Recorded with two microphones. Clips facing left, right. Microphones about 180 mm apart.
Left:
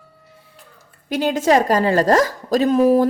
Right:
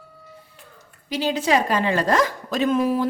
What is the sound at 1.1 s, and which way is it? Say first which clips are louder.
Speech: left 5 dB; 50° left (ahead or behind).